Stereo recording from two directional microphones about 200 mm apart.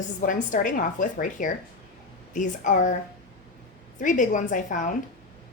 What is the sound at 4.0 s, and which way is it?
Speech, 40° left (ahead or behind).